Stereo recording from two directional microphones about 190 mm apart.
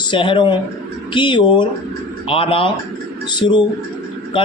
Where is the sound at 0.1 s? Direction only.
25° left (ahead or behind).